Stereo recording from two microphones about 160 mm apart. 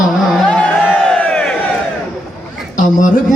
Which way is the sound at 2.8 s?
50° left (ahead or behind).